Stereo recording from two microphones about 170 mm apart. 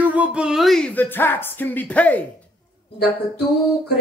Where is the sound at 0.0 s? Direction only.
10° right (ahead or behind); by 2.2 s 10° left (ahead or behind).